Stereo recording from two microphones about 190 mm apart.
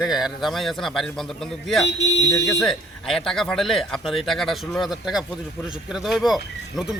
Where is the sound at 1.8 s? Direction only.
65° left (ahead or behind).